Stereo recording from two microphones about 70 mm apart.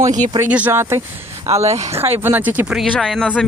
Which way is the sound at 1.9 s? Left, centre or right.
Right.